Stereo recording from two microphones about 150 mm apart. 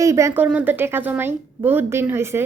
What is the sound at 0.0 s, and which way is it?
A woman's voice, 20° right (ahead or behind).